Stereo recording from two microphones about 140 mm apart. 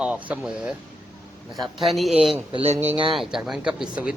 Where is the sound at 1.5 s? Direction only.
30° right (ahead or behind).